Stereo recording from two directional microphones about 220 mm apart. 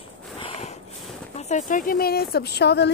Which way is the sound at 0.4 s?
25° left (ahead or behind).